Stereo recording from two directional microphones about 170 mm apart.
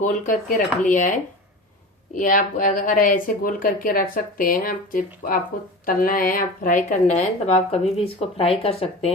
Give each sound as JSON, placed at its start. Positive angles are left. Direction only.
{"t": 0.0, "sound": "a woman's voice", "side_deg": 50}